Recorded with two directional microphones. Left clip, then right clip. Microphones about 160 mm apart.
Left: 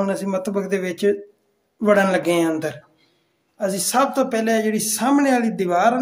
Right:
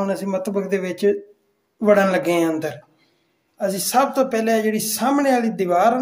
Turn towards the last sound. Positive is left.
turn(degrees=0)  # may be behind; listen again after turning